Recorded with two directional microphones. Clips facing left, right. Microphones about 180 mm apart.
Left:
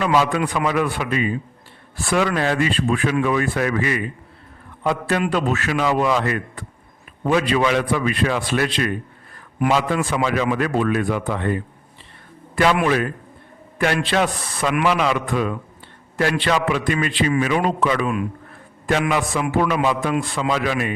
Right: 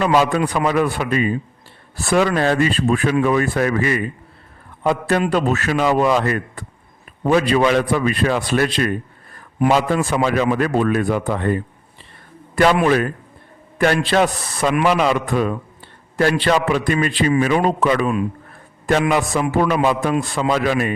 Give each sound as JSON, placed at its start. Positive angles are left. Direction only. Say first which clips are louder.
{"t": 0.0, "sound": "speech", "louder": "right 2 dB", "side_deg": -40}
{"t": 10.1, "sound": "speech", "louder": "right 3 dB", "side_deg": -40}